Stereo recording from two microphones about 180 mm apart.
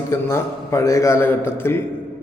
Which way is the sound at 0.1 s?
15° left (ahead or behind).